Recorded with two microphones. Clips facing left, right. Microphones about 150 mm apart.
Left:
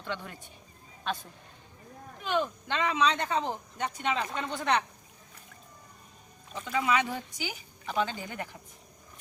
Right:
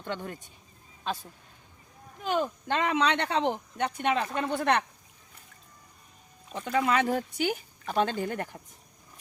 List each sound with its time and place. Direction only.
0.0 s speech: 45° right (ahead or behind)
2.2 s speech: 40° right (ahead or behind); by 3.5 s 70° right (ahead or behind)
3.8 s speech: 55° right (ahead or behind)
6.5 s speech: 50° right (ahead or behind)